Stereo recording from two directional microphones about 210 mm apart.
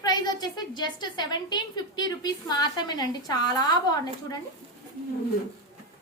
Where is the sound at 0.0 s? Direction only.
20° left (ahead or behind).